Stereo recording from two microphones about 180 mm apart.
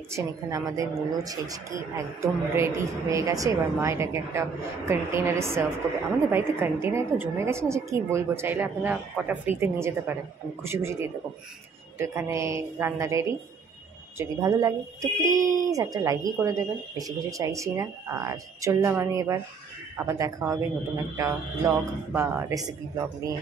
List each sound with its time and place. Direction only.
0.1 s a woman's voice: 20° right (ahead or behind)